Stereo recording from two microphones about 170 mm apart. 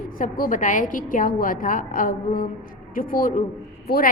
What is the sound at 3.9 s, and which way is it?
Speech, 65° left (ahead or behind).